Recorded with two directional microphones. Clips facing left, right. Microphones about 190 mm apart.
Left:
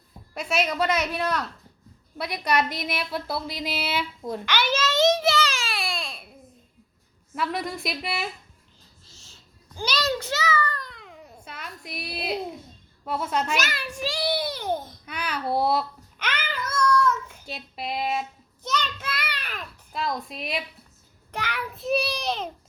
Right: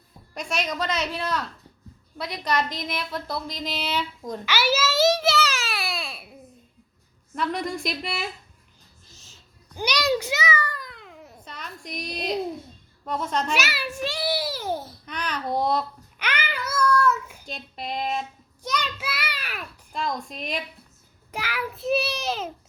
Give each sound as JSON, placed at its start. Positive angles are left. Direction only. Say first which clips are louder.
{"t": 0.3, "sound": "speech", "louder": "left 3 dB", "side_deg": 5}
{"t": 4.4, "sound": "a sound", "louder": "right 2 dB", "side_deg": -5}
{"t": 7.3, "sound": "a child's voice", "louder": "right 1 dB", "side_deg": 5}
{"t": 9.0, "sound": "a sound", "louder": "right 1 dB", "side_deg": -20}
{"t": 13.1, "sound": "speech", "louder": "even", "side_deg": 5}
{"t": 13.6, "sound": "a child's voice", "louder": "right 1 dB", "side_deg": -5}
{"t": 15.0, "sound": "a child's voice", "louder": "even", "side_deg": 10}
{"t": 16.1, "sound": "child singing", "louder": "right 1 dB", "side_deg": -10}
{"t": 17.4, "sound": "a child's voice", "louder": "left 1 dB", "side_deg": 5}
{"t": 18.6, "sound": "a child's voice", "louder": "even", "side_deg": -10}